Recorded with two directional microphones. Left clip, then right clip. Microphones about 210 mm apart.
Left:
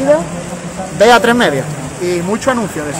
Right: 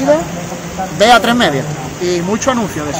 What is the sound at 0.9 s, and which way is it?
Speech, 20° left (ahead or behind).